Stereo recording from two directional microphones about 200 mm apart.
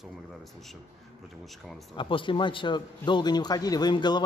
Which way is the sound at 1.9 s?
25° left (ahead or behind).